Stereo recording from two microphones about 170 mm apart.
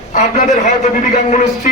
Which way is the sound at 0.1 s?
40° left (ahead or behind).